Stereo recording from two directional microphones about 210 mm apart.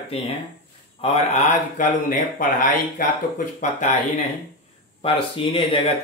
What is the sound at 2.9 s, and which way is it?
Speech, 35° left (ahead or behind).